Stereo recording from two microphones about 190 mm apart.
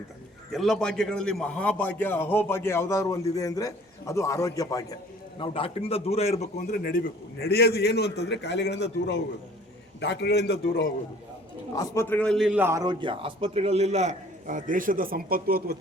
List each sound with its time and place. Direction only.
0.5 s a man's voice: centre (ahead or behind); by 4.9 s 20° left (ahead or behind)
5.4 s a man's voice: 30° left (ahead or behind); by 7.0 s 45° left (ahead or behind)
7.4 s a man's voice: 55° left (ahead or behind)
11.7 s a man's voice: 15° left (ahead or behind); by 15.8 s 55° right (ahead or behind)